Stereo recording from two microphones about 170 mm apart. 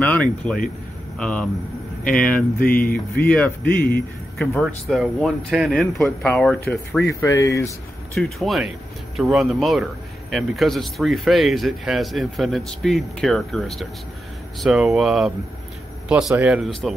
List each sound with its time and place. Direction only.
0.0 s speech: 5° left (ahead or behind)
2.8 s speech: 60° left (ahead or behind)
3.3 s speech: 10° left (ahead or behind)
8.1 s speech: centre (ahead or behind)